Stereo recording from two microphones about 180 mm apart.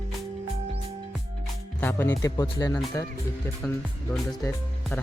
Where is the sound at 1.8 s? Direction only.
15° left (ahead or behind).